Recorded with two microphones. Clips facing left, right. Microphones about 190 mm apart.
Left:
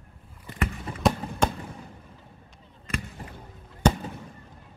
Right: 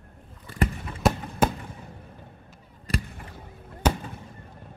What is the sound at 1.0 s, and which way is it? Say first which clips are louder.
Fireworks: right 1 dB; 5° right (ahead or behind).